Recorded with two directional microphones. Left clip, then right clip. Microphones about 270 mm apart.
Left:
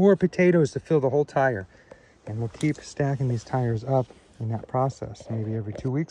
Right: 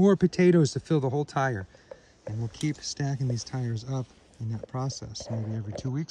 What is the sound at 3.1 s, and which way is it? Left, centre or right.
Speech, centre.